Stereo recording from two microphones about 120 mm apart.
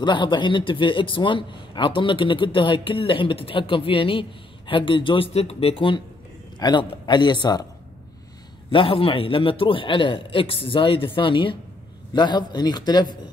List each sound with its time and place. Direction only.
0.0 s a man's voice: 40° left (ahead or behind)
8.7 s a man's voice: 50° left (ahead or behind)